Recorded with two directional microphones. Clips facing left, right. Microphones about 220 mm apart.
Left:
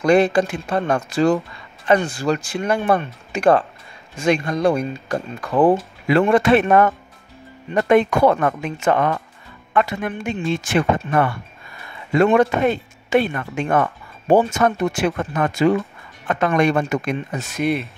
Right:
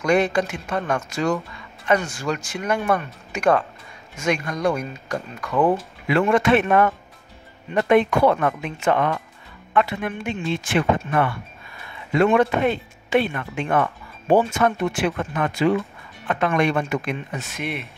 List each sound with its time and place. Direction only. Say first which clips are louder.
0.0 s speech: left 4 dB; 30° left (ahead or behind)